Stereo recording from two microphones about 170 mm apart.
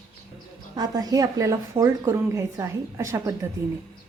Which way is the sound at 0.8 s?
20° right (ahead or behind).